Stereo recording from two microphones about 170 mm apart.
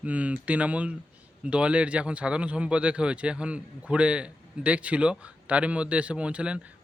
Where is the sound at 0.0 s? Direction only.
10° right (ahead or behind).